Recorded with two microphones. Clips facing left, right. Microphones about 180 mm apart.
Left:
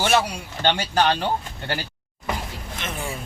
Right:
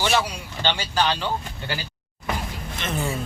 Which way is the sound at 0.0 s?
55° left (ahead or behind).